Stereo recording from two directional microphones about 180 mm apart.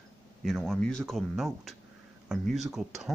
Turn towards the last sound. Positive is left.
turn(degrees=0)  # may be behind; listen again after turning